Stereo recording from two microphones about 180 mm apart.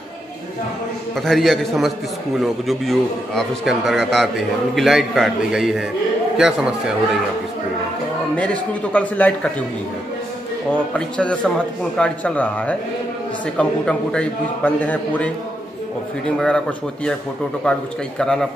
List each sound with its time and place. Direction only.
1.1 s a man's voice: centre (ahead or behind)
8.9 s a man's voice: 10° left (ahead or behind)
10.9 s a man's voice: 5° left (ahead or behind)
16.3 s a man's voice: 5° left (ahead or behind)